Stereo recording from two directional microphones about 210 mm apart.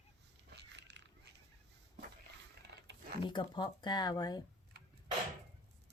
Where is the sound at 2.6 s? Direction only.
50° right (ahead or behind).